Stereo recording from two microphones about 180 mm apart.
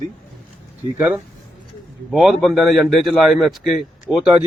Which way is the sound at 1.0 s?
10° right (ahead or behind).